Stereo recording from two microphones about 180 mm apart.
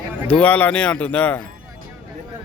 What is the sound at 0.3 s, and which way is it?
Speech, 10° left (ahead or behind).